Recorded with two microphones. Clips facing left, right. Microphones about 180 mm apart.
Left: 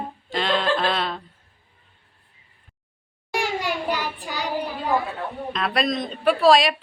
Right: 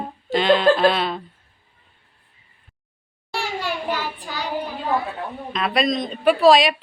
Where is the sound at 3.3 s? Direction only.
15° left (ahead or behind).